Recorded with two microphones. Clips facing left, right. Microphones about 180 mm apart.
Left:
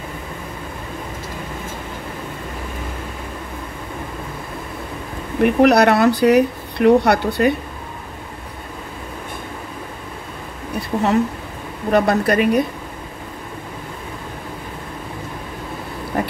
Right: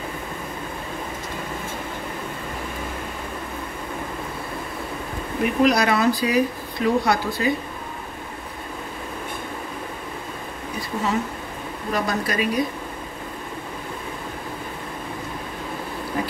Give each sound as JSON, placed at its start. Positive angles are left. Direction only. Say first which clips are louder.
{"t": 5.4, "sound": "speech", "louder": "left 6 dB", "side_deg": 65}
{"t": 10.9, "sound": "speech", "louder": "left 7 dB", "side_deg": 45}
{"t": 11.9, "sound": "speech", "louder": "left 9 dB", "side_deg": 60}